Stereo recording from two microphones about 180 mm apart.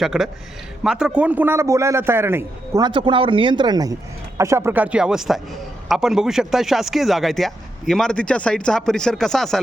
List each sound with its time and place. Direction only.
0.0 s a man's voice: centre (ahead or behind)